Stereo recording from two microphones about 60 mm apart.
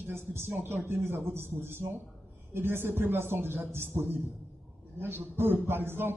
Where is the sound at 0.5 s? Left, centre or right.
Right.